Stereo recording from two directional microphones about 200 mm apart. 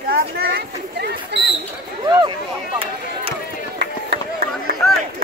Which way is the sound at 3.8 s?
55° right (ahead or behind).